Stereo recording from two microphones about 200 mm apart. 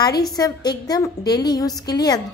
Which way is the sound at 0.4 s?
20° left (ahead or behind).